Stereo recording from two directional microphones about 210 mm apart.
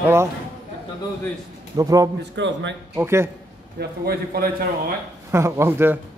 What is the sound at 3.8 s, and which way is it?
Speech, 45° right (ahead or behind).